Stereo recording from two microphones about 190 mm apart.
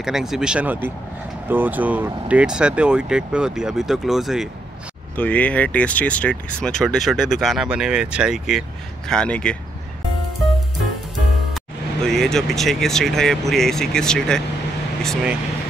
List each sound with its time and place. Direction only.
0.0 s speech: centre (ahead or behind)
11.5 s speech: centre (ahead or behind)